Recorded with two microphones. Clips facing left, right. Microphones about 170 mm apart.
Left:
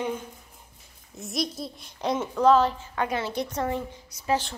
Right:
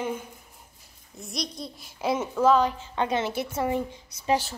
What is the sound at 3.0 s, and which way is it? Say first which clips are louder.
Speech: right 2 dB; 20° right (ahead or behind).